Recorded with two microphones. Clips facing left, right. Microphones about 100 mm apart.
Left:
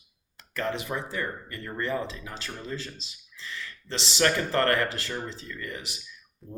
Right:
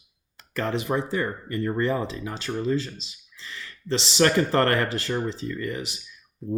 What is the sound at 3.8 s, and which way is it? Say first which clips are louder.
Speech: right 4 dB; 30° right (ahead or behind).